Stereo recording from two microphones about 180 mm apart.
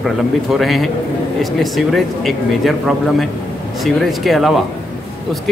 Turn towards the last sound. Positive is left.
turn(degrees=0)  # may be behind; listen again after turning